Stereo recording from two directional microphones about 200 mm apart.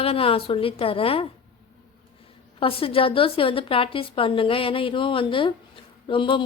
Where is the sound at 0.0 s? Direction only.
30° left (ahead or behind).